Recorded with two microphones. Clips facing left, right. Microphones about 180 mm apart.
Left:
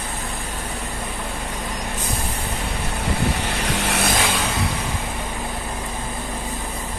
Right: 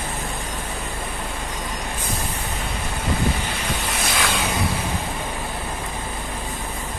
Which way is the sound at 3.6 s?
80° left.